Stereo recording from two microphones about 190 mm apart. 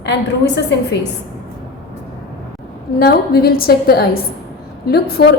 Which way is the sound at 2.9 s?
55° left (ahead or behind).